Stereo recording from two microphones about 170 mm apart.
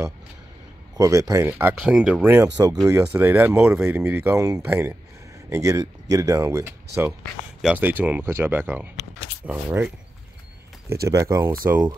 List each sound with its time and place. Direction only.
0.9 s speech: 20° right (ahead or behind)
11.1 s speech: 20° right (ahead or behind)